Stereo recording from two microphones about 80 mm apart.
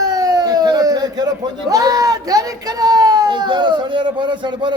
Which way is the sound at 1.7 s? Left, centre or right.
Right.